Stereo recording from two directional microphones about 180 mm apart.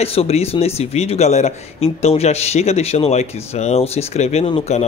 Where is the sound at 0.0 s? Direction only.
35° left (ahead or behind).